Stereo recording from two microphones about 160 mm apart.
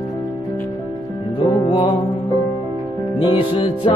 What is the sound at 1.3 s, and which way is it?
Music, 35° left (ahead or behind).